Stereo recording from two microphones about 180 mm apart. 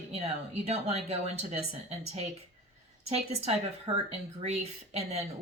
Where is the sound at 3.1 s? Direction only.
35° right (ahead or behind).